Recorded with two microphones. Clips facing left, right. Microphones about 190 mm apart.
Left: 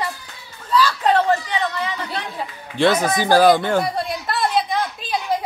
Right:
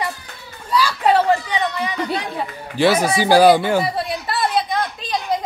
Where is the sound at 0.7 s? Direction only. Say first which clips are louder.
Right 1 dB; 10° right (ahead or behind).